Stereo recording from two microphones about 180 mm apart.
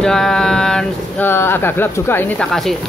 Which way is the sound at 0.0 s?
5° left (ahead or behind).